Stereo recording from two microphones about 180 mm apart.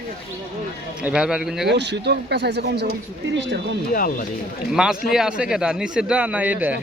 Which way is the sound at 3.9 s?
50° left (ahead or behind).